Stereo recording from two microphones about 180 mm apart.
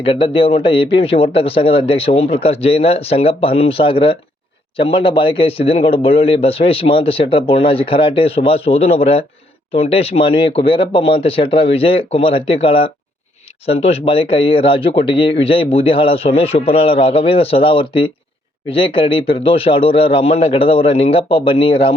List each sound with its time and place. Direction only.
0.0 s a man's voice: 30° left (ahead or behind)